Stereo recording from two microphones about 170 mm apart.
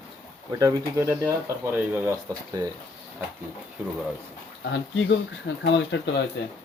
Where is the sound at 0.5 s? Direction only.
20° right (ahead or behind).